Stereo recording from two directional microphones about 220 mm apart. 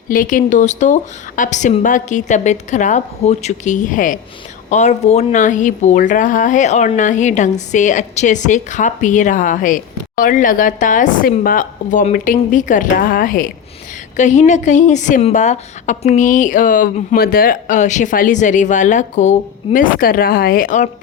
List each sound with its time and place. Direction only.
0.1 s speech: 40° left (ahead or behind)